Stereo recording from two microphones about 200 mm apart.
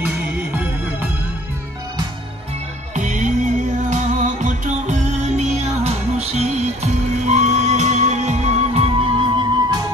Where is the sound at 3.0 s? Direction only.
40° right (ahead or behind).